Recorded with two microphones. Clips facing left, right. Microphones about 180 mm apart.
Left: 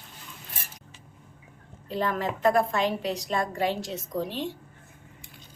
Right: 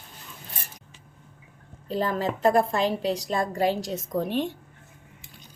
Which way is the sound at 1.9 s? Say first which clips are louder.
Right 2 dB; 35° right (ahead or behind).